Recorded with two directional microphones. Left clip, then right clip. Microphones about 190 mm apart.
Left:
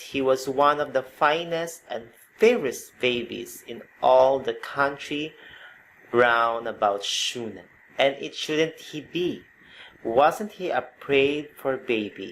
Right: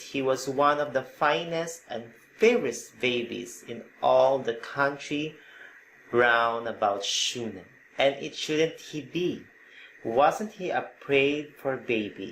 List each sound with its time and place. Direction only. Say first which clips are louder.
0.0 s speech: left 4 dB; 35° left (ahead or behind)